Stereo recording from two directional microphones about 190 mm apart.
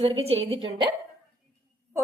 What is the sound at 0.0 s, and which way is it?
Speech, 30° right (ahead or behind).